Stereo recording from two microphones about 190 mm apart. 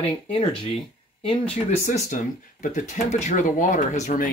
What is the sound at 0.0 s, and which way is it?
Speech, 30° left (ahead or behind).